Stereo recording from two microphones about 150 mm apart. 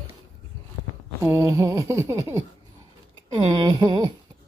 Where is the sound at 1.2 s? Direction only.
20° right (ahead or behind).